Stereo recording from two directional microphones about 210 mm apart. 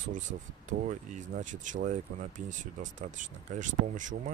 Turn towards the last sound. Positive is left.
turn(degrees=-35)  # may be behind; listen again after turning